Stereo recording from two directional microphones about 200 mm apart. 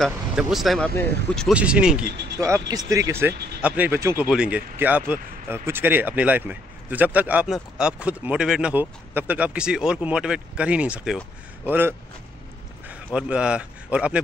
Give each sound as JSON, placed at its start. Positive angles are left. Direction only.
{"t": 0.0, "sound": "a man's voice", "side_deg": 0}